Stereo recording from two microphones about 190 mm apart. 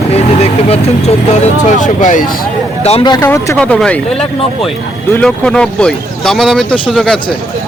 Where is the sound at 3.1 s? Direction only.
15° left (ahead or behind).